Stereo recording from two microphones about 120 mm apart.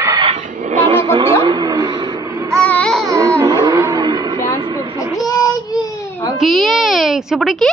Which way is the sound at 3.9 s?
35° right (ahead or behind).